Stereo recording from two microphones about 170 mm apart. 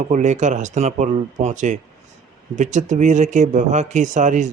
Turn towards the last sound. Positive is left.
turn(degrees=-45)  # may be behind; listen again after turning